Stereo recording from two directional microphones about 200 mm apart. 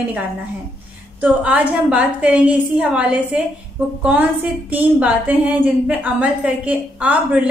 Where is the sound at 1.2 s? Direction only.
5° right (ahead or behind).